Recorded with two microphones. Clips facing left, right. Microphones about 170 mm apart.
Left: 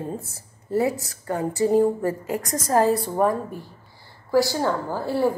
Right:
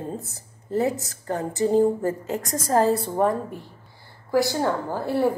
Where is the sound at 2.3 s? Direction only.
25° right (ahead or behind).